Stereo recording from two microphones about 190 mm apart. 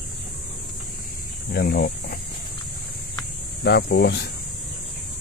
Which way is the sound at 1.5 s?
55° left (ahead or behind).